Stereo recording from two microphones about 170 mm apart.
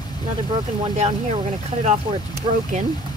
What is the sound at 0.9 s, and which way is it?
Speech, 40° right (ahead or behind).